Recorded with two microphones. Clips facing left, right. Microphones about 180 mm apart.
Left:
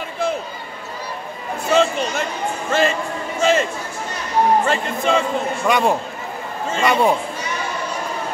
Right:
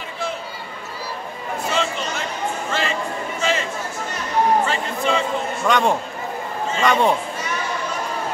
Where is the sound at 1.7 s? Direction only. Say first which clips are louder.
Left 8 dB; 45° left (ahead or behind).